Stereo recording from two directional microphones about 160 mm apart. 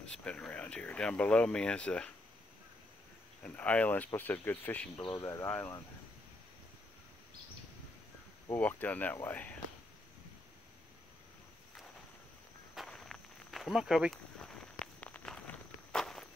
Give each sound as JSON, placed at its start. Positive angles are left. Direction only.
{"t": 0.0, "sound": "speech", "side_deg": 5}
{"t": 3.4, "sound": "speech", "side_deg": 10}
{"t": 4.9, "sound": "speech", "side_deg": 30}
{"t": 5.2, "sound": "speech", "side_deg": 15}
{"t": 8.5, "sound": "speech", "side_deg": 10}
{"t": 12.7, "sound": "walk", "side_deg": 0}